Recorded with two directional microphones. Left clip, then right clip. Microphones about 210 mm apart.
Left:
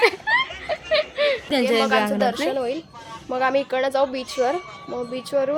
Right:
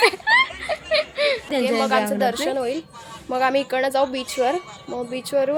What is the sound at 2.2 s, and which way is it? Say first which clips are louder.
Speech: even; 20° right (ahead or behind).